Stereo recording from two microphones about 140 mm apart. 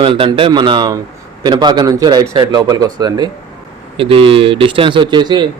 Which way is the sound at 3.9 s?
40° right (ahead or behind).